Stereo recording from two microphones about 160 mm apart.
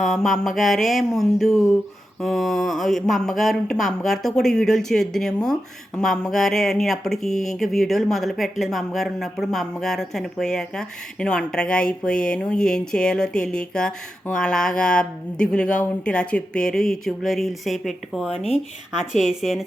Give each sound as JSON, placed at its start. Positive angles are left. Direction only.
{"t": 0.0, "sound": "speech", "side_deg": 0}